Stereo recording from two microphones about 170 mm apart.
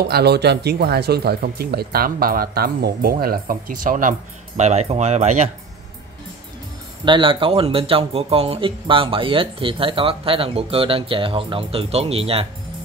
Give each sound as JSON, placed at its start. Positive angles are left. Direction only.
{"t": 0.1, "sound": "speech", "side_deg": -75}
{"t": 4.6, "sound": "speech", "side_deg": -40}
{"t": 7.1, "sound": "speech", "side_deg": -30}